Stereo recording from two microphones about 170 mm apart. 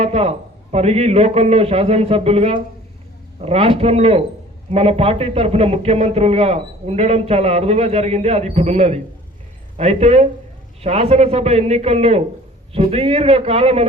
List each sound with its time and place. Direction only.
0.0 s a man's voice: 40° right (ahead or behind)